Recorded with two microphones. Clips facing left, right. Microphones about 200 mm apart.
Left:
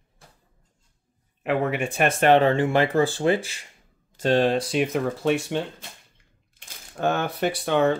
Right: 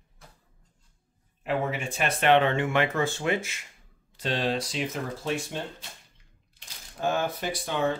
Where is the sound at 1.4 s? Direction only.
65° left (ahead or behind); by 3.6 s 30° left (ahead or behind).